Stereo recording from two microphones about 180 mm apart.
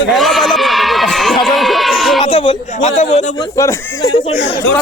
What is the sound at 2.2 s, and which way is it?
A man's voice, 30° left (ahead or behind).